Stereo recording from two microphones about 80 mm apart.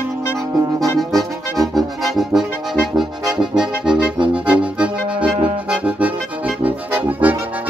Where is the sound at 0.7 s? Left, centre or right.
Centre.